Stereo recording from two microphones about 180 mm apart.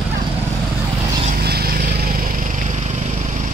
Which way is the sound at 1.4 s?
60° right (ahead or behind).